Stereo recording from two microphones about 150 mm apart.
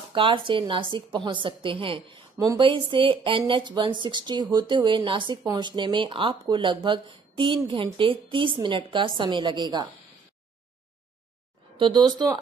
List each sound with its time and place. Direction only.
0.1 s speech: 35° right (ahead or behind)
2.3 s speech: 25° right (ahead or behind)
2.6 s speech: 35° right (ahead or behind)
11.8 s speech: 30° right (ahead or behind)